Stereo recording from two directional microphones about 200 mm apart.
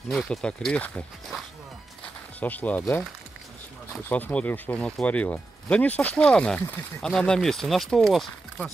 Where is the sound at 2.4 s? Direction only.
10° left (ahead or behind).